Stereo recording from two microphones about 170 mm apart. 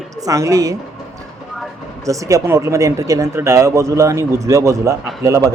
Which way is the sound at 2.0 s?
20° right (ahead or behind).